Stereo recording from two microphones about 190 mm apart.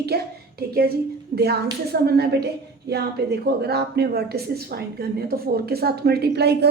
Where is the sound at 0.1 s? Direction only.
55° right (ahead or behind).